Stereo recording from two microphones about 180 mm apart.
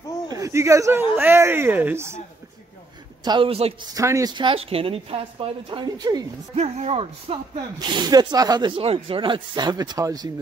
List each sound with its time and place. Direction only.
0.3 s speech: 15° right (ahead or behind)
3.3 s speech: 30° right (ahead or behind)
3.9 s speech: 20° right (ahead or behind)
6.5 s speech: 35° right (ahead or behind); by 10.3 s 20° right (ahead or behind)